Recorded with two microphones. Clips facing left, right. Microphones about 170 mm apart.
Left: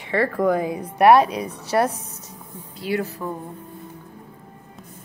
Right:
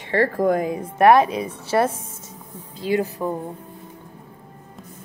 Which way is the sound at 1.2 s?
25° right (ahead or behind).